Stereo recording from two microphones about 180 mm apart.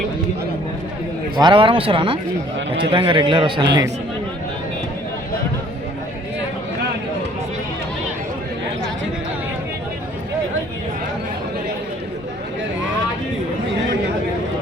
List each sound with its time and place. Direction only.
1.4 s a man's voice: 25° right (ahead or behind)